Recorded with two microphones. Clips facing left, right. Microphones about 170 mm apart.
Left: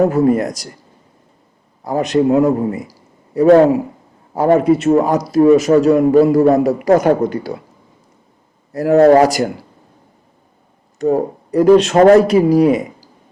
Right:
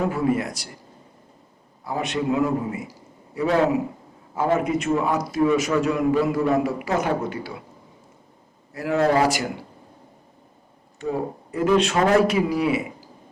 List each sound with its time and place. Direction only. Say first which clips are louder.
0.0 s a man's voice: left 9 dB; 40° left (ahead or behind)
1.8 s a man's voice: left 11 dB; 40° left (ahead or behind)
4.5 s a man's voice: left 11 dB; 35° left (ahead or behind)
8.7 s a man's voice: left 11 dB; 40° left (ahead or behind)
11.0 s a man's voice: left 10 dB; 40° left (ahead or behind)